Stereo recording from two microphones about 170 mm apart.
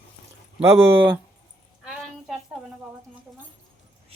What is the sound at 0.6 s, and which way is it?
Speech, 15° right (ahead or behind).